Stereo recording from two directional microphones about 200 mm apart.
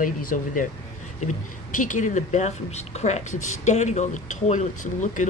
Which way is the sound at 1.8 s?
40° left (ahead or behind).